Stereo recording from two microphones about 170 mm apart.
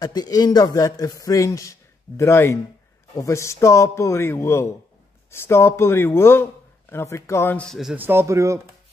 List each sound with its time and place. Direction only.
0.0 s a man's voice: 25° left (ahead or behind); by 7.9 s 5° left (ahead or behind)
7.9 s speech: 10° right (ahead or behind)